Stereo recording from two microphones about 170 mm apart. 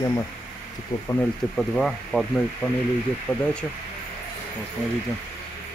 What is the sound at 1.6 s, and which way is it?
Speech, centre (ahead or behind).